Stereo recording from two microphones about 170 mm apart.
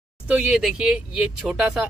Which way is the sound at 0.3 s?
5° right (ahead or behind).